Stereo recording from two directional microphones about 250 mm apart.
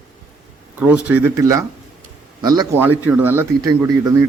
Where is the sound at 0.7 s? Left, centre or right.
Centre.